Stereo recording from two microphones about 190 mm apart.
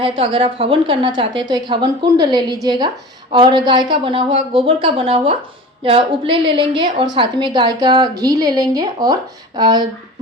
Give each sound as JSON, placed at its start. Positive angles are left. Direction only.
{"t": 0.0, "sound": "a woman's voice", "side_deg": -30}